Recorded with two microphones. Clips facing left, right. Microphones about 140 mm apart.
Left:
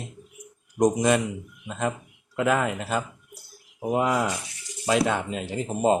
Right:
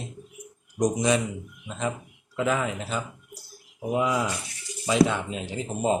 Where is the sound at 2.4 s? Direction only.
65° left (ahead or behind).